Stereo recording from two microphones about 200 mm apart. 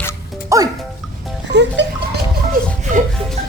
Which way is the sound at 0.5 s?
15° right (ahead or behind).